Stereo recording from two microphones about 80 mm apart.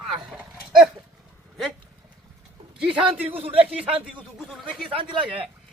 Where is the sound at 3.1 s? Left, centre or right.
Right.